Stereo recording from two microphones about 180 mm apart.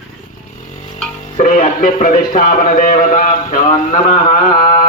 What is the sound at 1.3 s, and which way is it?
Speech, 50° left (ahead or behind).